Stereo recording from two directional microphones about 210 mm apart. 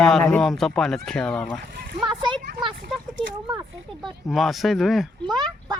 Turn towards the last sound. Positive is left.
turn(degrees=0)  # may be behind; listen again after turning